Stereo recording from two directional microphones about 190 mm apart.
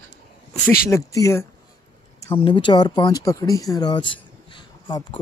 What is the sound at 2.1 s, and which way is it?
Speech, 30° left (ahead or behind).